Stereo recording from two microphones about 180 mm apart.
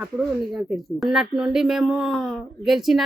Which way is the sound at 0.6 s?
Centre (ahead or behind).